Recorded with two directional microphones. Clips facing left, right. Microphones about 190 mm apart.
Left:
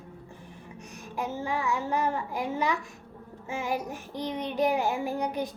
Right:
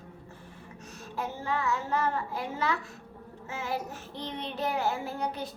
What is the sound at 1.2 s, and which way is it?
Child singing, 15° left (ahead or behind).